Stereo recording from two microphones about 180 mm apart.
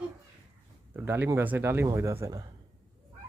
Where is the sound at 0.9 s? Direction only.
10° right (ahead or behind).